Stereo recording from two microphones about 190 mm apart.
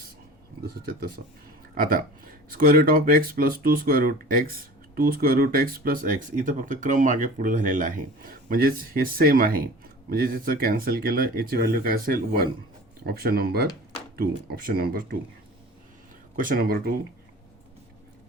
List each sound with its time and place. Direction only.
0.6 s speech: 55° right (ahead or behind)
16.3 s speech: 45° right (ahead or behind)